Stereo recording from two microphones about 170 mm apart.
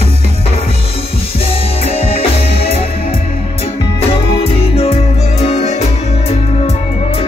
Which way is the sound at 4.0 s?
35° left (ahead or behind).